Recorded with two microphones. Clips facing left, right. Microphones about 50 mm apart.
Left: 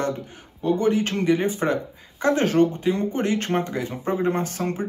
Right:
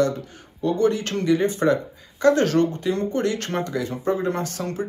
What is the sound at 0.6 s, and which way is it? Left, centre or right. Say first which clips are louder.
Speech: even; centre.